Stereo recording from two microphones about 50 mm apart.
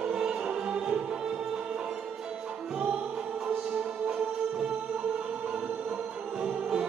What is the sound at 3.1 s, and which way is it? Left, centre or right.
Music, centre.